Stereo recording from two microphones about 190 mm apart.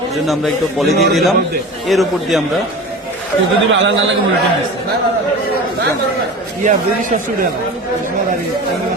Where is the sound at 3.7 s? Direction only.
75° right (ahead or behind).